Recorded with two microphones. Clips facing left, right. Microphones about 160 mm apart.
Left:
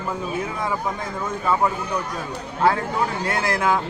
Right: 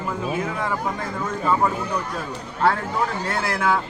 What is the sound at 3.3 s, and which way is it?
Speech, 20° left (ahead or behind).